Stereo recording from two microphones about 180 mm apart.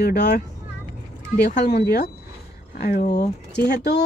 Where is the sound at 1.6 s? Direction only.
65° left (ahead or behind).